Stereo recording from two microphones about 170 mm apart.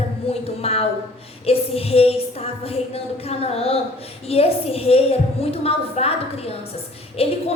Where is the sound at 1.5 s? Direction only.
35° left (ahead or behind).